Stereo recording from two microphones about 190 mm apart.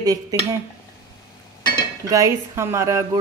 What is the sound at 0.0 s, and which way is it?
Speech, 20° right (ahead or behind).